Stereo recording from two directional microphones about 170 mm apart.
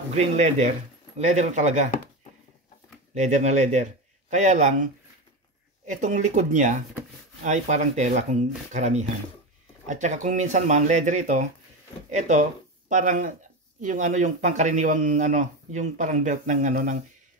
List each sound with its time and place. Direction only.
0.1 s speech: 45° right (ahead or behind)
3.2 s speech: 45° right (ahead or behind)
5.9 s speech: 45° right (ahead or behind)